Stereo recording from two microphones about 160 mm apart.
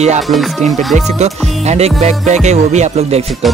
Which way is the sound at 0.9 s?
45° right (ahead or behind).